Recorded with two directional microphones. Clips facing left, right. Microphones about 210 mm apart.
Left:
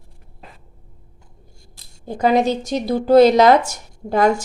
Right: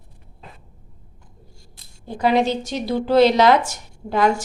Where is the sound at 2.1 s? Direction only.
45° left (ahead or behind).